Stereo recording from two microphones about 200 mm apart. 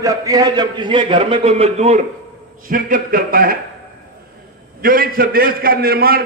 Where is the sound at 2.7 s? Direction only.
45° right (ahead or behind).